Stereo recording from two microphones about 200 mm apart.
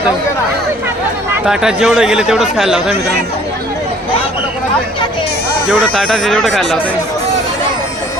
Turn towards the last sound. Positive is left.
turn(degrees=0)  # may be behind; listen again after turning